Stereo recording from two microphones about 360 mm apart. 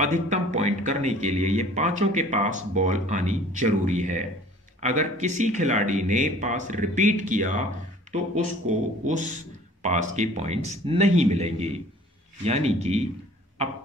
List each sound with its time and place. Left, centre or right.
0.0 s speech: right
9.0 s a man's voice: centre